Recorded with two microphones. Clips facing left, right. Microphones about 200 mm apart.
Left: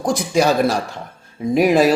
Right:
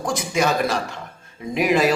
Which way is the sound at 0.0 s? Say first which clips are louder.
Left 5 dB; 35° left (ahead or behind).